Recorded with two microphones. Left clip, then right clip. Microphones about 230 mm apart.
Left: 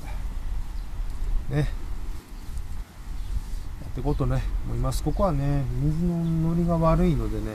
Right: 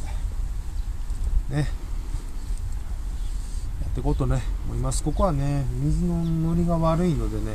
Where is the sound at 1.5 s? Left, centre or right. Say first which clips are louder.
Left 1 dB; centre.